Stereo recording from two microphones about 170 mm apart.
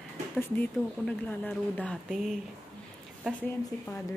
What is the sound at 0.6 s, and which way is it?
Speech, 10° left (ahead or behind).